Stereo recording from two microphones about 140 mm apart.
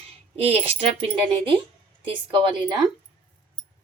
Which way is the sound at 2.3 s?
35° right (ahead or behind).